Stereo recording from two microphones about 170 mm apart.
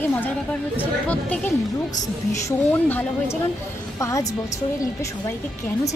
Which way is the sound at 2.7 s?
10° left (ahead or behind).